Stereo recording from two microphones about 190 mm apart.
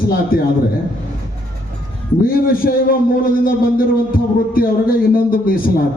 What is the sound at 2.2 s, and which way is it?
A man's voice, 50° left (ahead or behind).